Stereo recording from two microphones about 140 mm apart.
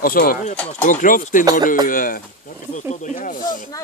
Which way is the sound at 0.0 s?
85° left.